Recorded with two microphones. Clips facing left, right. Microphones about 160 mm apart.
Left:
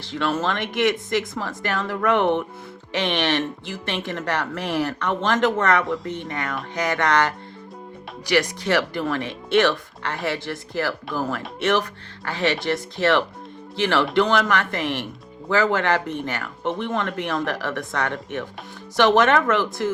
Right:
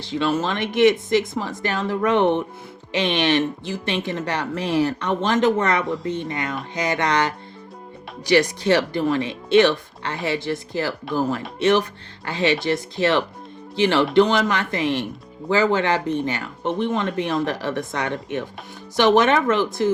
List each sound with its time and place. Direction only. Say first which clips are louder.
0.0 s speech: right 2 dB; 15° right (ahead or behind)